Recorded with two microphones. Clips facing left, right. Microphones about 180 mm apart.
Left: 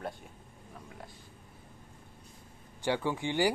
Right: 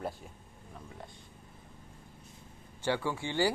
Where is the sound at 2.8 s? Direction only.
15° left (ahead or behind).